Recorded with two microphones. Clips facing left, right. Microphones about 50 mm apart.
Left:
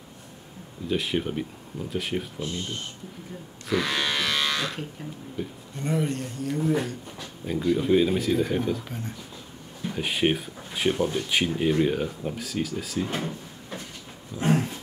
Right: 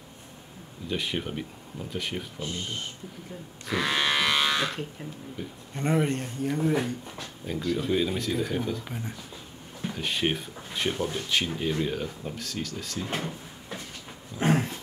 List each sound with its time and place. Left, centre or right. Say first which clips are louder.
0.8 s speech: left 4 dB; centre
3.6 s livestock: even; centre
5.4 s speech: left 6 dB; centre
5.8 s speech: right 1 dB; right
6.4 s speech: left 1 dB; right
7.2 s speech: left 3 dB; centre
8.8 s speech: left 1 dB; centre
9.9 s speech: left 4 dB; centre